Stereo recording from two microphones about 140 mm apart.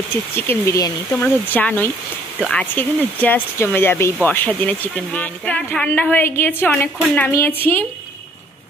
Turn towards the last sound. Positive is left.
turn(degrees=15)  # may be behind; listen again after turning